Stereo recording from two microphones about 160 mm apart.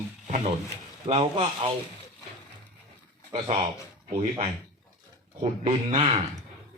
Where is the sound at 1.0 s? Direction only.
35° right (ahead or behind).